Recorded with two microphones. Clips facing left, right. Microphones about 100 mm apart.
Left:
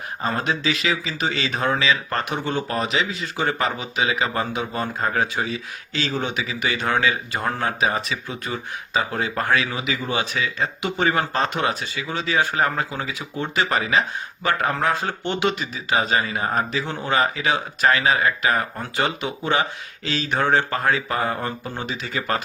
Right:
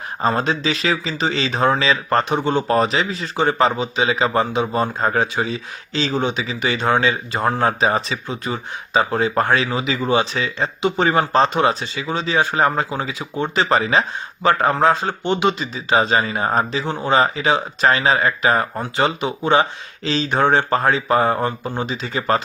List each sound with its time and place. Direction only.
0.2 s speech: 30° right (ahead or behind)